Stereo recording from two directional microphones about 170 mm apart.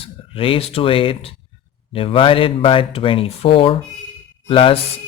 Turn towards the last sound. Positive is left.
turn(degrees=35)  # may be behind; listen again after turning